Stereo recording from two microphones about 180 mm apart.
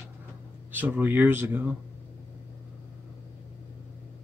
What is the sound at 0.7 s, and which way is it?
Speech, 10° right (ahead or behind).